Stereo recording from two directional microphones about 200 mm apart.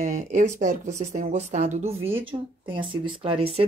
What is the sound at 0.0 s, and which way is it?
Speech, 35° right (ahead or behind).